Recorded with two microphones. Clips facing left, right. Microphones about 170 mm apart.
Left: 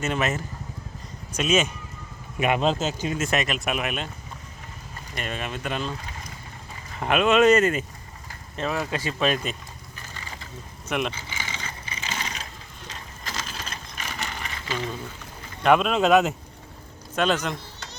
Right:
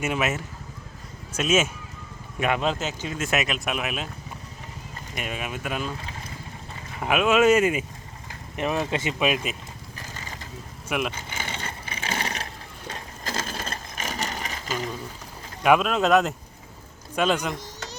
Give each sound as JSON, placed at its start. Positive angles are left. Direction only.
{"t": 0.0, "sound": "speech", "side_deg": -5}
{"t": 2.6, "sound": "speech", "side_deg": 25}
{"t": 3.2, "sound": "speech", "side_deg": 0}
{"t": 5.1, "sound": "speech", "side_deg": -10}
{"t": 7.0, "sound": "speech", "side_deg": -5}
{"t": 9.1, "sound": "speech", "side_deg": -10}
{"t": 10.8, "sound": "speech", "side_deg": -5}
{"t": 11.1, "sound": "a sound", "side_deg": -50}
{"t": 12.9, "sound": "wood", "side_deg": -45}
{"t": 15.6, "sound": "speech", "side_deg": -5}